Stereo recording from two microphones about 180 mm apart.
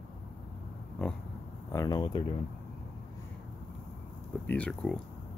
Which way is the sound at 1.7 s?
20° left (ahead or behind).